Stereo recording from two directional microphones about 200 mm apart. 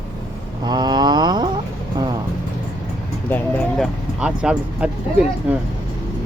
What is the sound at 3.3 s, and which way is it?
Speech, centre (ahead or behind).